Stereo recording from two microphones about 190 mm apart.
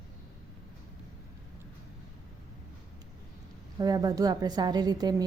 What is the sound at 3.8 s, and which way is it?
A woman's voice, 20° right (ahead or behind).